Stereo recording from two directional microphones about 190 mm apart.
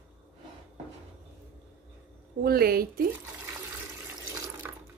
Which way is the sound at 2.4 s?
55° right (ahead or behind).